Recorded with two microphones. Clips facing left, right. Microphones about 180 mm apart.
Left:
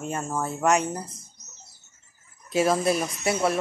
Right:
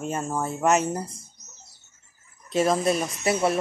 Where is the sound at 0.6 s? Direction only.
5° right (ahead or behind).